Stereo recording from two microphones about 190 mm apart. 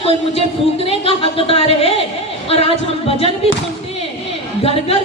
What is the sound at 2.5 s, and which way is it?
Singing, 30° left (ahead or behind).